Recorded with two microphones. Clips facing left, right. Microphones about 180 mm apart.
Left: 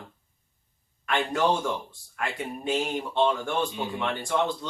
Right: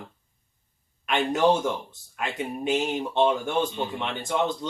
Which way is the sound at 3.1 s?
20° right (ahead or behind).